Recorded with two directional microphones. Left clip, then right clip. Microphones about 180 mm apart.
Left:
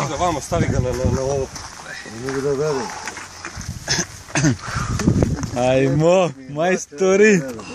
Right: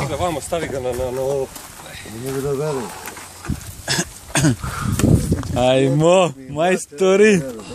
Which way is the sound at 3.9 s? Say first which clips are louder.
Right 1 dB; 10° right (ahead or behind).